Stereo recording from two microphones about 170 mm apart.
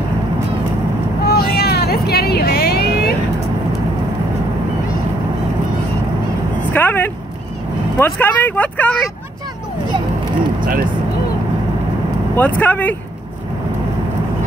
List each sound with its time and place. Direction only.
1.2 s vehicle: 65° left (ahead or behind)
6.7 s a sound: 10° left (ahead or behind)
8.0 s speech: 10° left (ahead or behind)
12.4 s speech: 10° left (ahead or behind)